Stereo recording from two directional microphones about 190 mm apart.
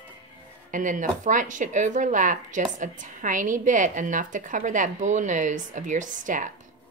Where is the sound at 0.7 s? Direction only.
45° right (ahead or behind).